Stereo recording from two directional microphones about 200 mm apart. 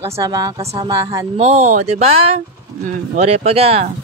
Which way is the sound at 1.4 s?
30° right (ahead or behind).